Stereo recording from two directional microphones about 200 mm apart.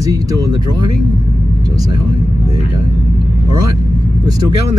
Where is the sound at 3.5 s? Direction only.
20° right (ahead or behind).